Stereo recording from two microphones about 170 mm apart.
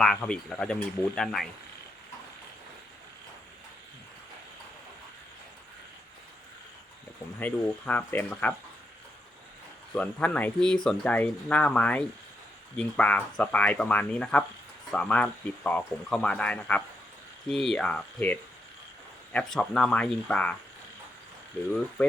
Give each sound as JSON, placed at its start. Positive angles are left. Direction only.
{"t": 0.0, "sound": "speech", "side_deg": 5}
{"t": 7.3, "sound": "speech", "side_deg": 10}
{"t": 9.9, "sound": "speech", "side_deg": 5}